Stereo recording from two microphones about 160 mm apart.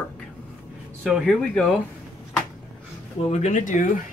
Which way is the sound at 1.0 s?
5° left (ahead or behind).